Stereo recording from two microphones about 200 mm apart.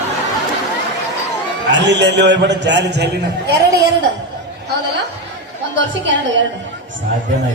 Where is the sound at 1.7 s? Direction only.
60° right (ahead or behind).